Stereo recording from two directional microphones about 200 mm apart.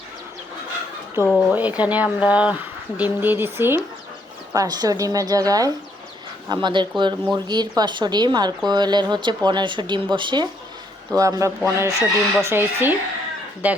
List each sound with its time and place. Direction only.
1.2 s speech: 15° left (ahead or behind)
1.5 s speech: 5° right (ahead or behind)